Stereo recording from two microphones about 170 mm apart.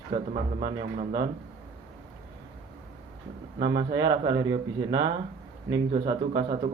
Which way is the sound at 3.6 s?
30° right (ahead or behind).